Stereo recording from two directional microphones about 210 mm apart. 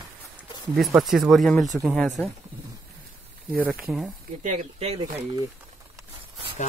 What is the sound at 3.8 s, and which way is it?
Speech, centre (ahead or behind).